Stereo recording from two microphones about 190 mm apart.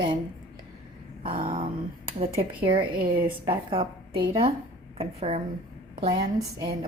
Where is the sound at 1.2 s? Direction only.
30° right (ahead or behind).